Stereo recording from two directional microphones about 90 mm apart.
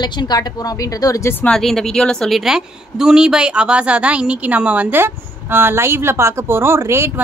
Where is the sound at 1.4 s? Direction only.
5° left (ahead or behind).